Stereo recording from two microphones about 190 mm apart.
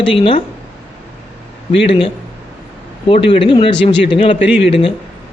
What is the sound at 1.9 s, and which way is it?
Speech, 30° left (ahead or behind).